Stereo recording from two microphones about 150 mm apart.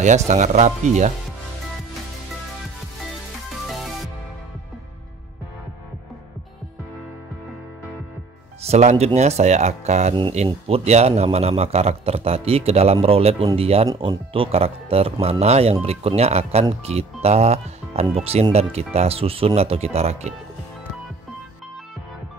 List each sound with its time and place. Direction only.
0.3 s a man's voice: 55° right (ahead or behind)
3.6 s music: centre (ahead or behind)
8.6 s a man's voice: 45° right (ahead or behind)